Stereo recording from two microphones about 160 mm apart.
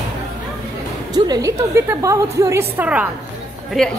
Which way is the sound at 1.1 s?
25° right (ahead or behind).